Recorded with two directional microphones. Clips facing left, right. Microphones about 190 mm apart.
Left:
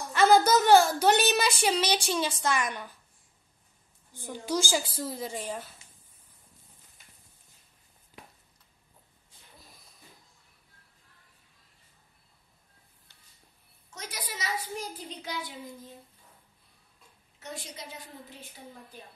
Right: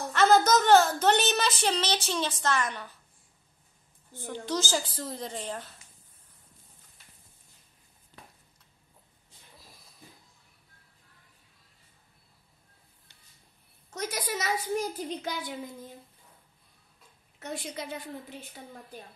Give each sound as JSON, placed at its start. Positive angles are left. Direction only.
{"t": 0.1, "sound": "a woman's voice", "side_deg": 10}
{"t": 4.1, "sound": "a woman's voice", "side_deg": 10}
{"t": 8.1, "sound": "a sound", "side_deg": 10}
{"t": 13.8, "sound": "a child's voice", "side_deg": -50}
{"t": 17.8, "sound": "a woman's voice", "side_deg": -55}